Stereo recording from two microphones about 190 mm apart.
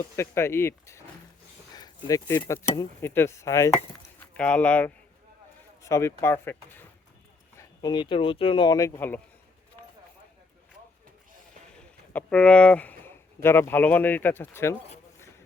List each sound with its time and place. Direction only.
0.2 s speech: 15° left (ahead or behind)
1.7 s a sound: 20° left (ahead or behind)
2.5 s speech: 15° left (ahead or behind)
7.5 s speech: 20° left (ahead or behind)
11.8 s speech: 5° left (ahead or behind)